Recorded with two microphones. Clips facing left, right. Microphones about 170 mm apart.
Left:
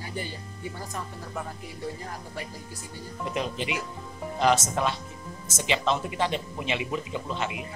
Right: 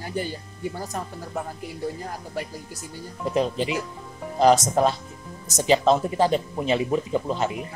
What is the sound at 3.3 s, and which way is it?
A woman's voice, 35° right (ahead or behind).